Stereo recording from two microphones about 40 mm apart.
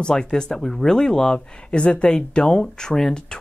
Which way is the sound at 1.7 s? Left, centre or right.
Left.